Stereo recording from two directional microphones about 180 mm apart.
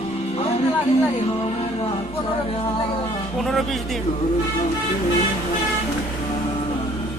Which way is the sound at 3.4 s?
Centre (ahead or behind).